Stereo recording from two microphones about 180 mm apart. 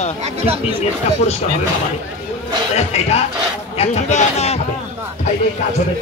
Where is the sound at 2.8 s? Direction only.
35° left (ahead or behind).